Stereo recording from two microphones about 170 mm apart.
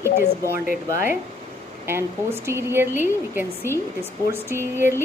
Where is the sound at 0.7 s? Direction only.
50° left (ahead or behind).